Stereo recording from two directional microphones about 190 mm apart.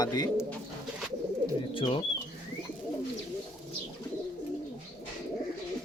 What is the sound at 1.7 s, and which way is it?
Speech, 30° left (ahead or behind).